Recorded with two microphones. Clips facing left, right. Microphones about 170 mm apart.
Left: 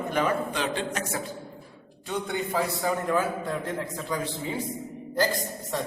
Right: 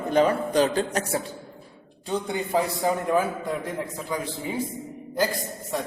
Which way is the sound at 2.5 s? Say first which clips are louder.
Right 4 dB; 20° right (ahead or behind).